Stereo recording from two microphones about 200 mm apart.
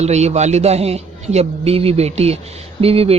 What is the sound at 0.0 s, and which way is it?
A man's voice, 35° right (ahead or behind).